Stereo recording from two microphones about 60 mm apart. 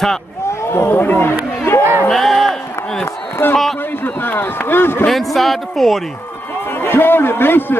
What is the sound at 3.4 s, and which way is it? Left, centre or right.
A man's voice, left.